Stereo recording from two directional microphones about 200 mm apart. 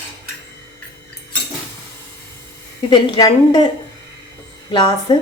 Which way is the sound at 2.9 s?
20° left (ahead or behind).